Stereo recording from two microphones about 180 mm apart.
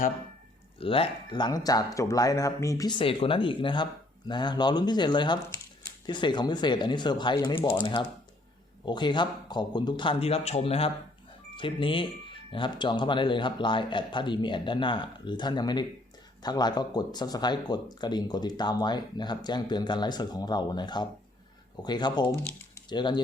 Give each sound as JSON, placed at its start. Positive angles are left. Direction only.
{"t": 0.8, "sound": "speech", "side_deg": 30}